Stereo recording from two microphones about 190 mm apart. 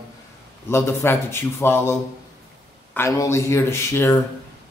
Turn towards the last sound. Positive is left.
turn(degrees=15)  # may be behind; listen again after turning